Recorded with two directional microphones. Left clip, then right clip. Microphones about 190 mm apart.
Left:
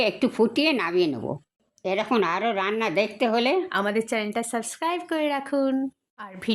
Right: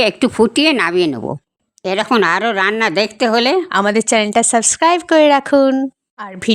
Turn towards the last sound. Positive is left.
turn(degrees=-45)  # may be behind; listen again after turning